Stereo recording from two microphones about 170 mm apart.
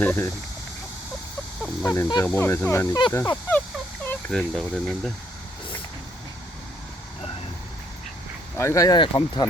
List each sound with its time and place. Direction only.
0.0 s speech: 10° left (ahead or behind)
1.8 s speech: 20° left (ahead or behind); by 5.1 s centre (ahead or behind)
8.5 s speech: 15° left (ahead or behind)